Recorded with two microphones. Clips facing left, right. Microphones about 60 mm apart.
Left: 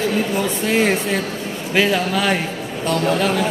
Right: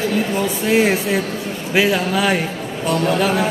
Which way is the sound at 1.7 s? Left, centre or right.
Centre.